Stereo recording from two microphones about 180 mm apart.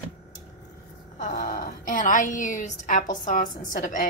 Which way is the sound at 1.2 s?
45° left (ahead or behind).